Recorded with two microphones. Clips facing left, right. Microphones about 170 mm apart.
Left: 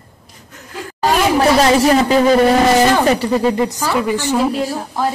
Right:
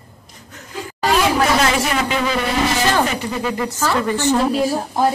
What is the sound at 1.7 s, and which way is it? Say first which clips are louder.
A man's voice: left 8 dB; 35° left (ahead or behind).